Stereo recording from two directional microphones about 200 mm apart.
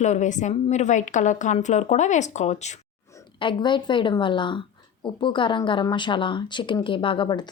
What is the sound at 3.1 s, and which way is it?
Speech, 25° left (ahead or behind).